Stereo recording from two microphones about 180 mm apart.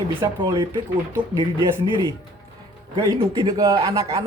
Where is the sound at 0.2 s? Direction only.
25° right (ahead or behind).